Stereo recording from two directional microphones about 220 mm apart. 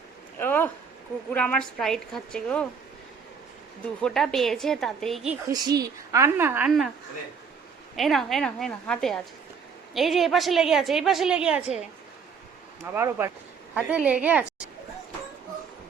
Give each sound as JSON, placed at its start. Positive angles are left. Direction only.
{"t": 0.3, "sound": "a sound", "side_deg": 10}
{"t": 1.3, "sound": "a woman's voice", "side_deg": 5}
{"t": 4.0, "sound": "a woman's voice", "side_deg": 0}
{"t": 5.5, "sound": "a woman's voice", "side_deg": -15}
{"t": 7.9, "sound": "a woman's voice", "side_deg": 0}
{"t": 12.8, "sound": "a woman's voice", "side_deg": -10}